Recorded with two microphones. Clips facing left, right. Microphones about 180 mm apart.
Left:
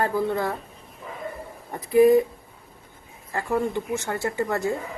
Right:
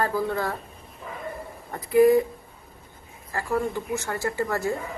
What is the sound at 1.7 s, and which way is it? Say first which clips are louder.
Speech: left 1 dB; 15° left (ahead or behind).